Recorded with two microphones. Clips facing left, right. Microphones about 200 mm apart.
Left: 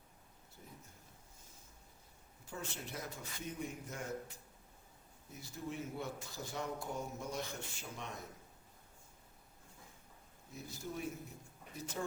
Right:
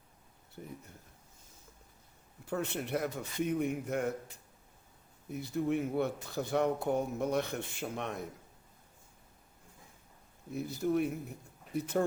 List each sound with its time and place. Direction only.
0.6 s speech: 65° right (ahead or behind)
2.5 s speech: 60° right (ahead or behind)
5.3 s speech: 60° right (ahead or behind)
10.5 s speech: 65° right (ahead or behind)